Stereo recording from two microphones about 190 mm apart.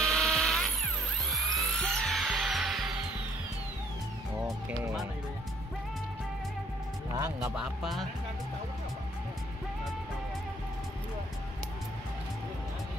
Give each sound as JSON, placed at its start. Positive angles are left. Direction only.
{"t": 0.0, "sound": "music", "side_deg": 0}
{"t": 7.5, "sound": "speech", "side_deg": -5}